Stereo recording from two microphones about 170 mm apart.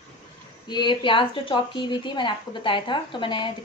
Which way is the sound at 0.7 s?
25° left (ahead or behind).